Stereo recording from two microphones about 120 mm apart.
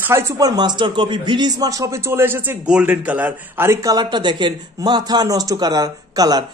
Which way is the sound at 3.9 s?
40° right (ahead or behind).